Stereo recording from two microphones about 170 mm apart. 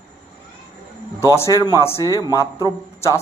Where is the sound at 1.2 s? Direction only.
20° left (ahead or behind).